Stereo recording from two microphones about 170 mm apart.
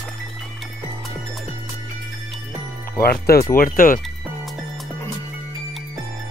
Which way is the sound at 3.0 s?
65° left (ahead or behind).